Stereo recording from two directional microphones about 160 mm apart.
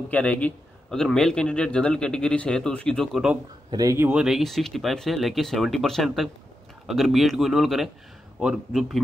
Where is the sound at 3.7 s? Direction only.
20° right (ahead or behind).